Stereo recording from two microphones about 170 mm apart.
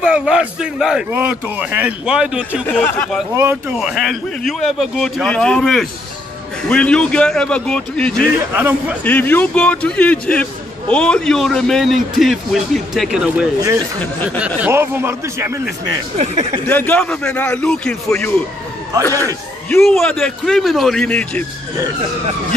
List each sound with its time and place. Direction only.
0.0 s a man's voice: 5° right (ahead or behind)
2.6 s a man's voice: 10° left (ahead or behind)
3.3 s a man's voice: 10° right (ahead or behind); by 8.3 s 5° left (ahead or behind)
8.5 s a man's voice: 10° right (ahead or behind)
9.0 s a man's voice: 10° left (ahead or behind); by 15.6 s 15° right (ahead or behind)
16.2 s speech: 40° right (ahead or behind)
16.6 s a man's voice: 10° left (ahead or behind)
19.8 s a man's voice: 5° left (ahead or behind)